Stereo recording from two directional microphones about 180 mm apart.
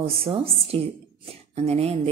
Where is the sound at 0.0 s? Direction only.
30° right (ahead or behind).